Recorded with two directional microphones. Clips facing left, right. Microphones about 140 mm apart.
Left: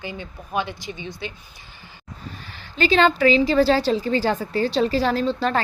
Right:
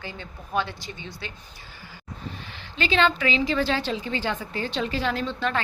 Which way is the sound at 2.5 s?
40° left (ahead or behind).